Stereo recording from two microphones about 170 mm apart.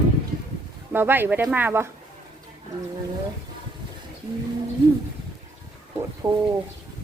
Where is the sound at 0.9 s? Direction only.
15° right (ahead or behind).